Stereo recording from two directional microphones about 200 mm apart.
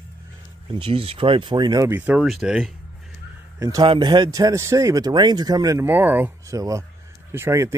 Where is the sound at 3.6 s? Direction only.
15° right (ahead or behind).